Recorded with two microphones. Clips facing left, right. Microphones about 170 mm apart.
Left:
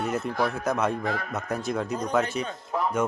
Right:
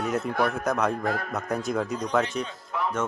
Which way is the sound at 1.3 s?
Centre (ahead or behind).